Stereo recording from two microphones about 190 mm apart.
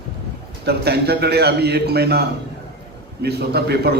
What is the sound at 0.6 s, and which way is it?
A man's voice, 60° right (ahead or behind).